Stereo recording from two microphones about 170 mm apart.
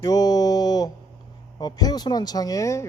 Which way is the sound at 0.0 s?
20° left (ahead or behind).